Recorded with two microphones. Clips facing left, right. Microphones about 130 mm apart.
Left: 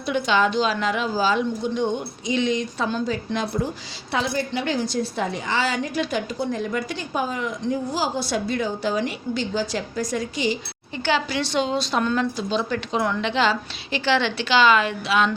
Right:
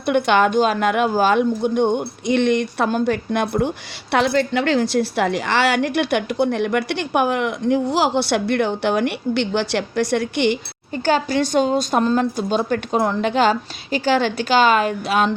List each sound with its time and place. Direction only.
0.0 s a woman's voice: 60° right (ahead or behind)
10.9 s a woman's voice: 45° right (ahead or behind)
12.0 s a woman's voice: 35° right (ahead or behind)
12.4 s a woman's voice: 50° right (ahead or behind)